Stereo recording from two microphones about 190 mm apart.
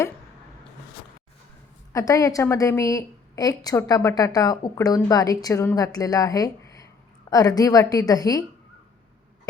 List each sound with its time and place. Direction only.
1.9 s a woman's voice: 15° left (ahead or behind)